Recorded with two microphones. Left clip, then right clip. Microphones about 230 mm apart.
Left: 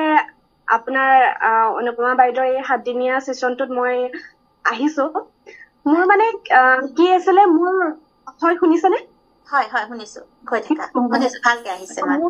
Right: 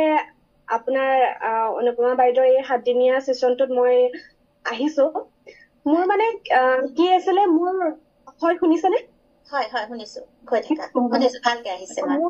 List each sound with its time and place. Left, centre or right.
0.0 s a woman's voice: left